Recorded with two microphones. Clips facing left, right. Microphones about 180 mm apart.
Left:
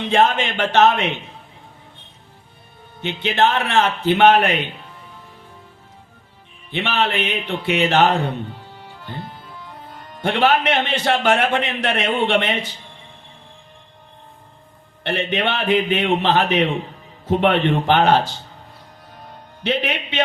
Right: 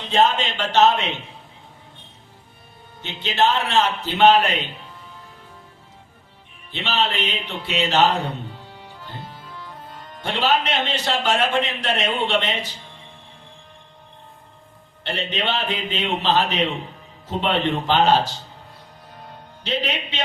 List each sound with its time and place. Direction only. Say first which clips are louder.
0.0 s a man's voice: left 2 dB; 55° left (ahead or behind)
3.0 s a man's voice: left 3 dB; 60° left (ahead or behind)
6.7 s a man's voice: left 3 dB; 60° left (ahead or behind)
10.2 s a man's voice: left 4 dB; 60° left (ahead or behind)
15.0 s a man's voice: left 4 dB; 60° left (ahead or behind)
19.6 s a man's voice: left 3 dB; 60° left (ahead or behind)